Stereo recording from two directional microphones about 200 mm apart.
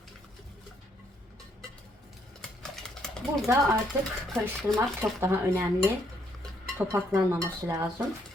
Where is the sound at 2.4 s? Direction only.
5° left (ahead or behind).